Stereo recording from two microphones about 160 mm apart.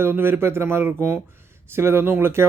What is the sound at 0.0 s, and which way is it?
Speech, 15° right (ahead or behind).